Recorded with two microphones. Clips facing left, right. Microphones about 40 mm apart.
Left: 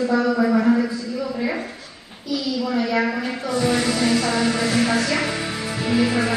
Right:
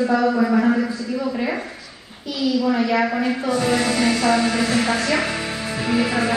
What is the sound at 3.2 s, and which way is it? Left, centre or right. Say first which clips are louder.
Speech: right 2 dB; right.